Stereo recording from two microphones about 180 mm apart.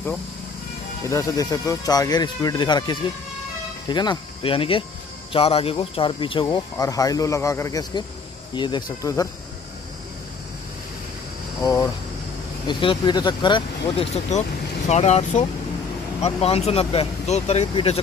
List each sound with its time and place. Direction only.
1.0 s speech: 20° left (ahead or behind)
11.6 s speech: 20° left (ahead or behind)
14.9 s speech: 40° left (ahead or behind)